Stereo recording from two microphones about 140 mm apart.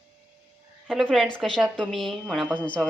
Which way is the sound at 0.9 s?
Centre (ahead or behind).